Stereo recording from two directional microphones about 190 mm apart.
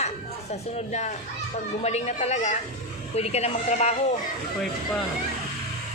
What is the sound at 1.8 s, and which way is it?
Speech, 35° left (ahead or behind).